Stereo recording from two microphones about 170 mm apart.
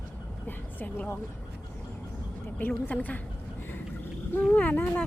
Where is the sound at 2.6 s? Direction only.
10° left (ahead or behind).